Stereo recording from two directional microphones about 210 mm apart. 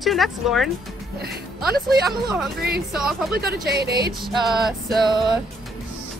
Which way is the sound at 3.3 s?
50° right (ahead or behind).